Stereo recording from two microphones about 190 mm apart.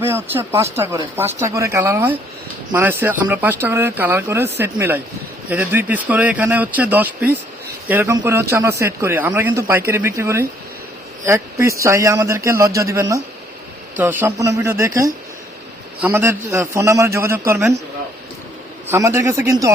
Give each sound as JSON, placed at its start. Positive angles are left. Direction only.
{"t": 0.0, "sound": "speech", "side_deg": -10}
{"t": 18.9, "sound": "speech", "side_deg": -15}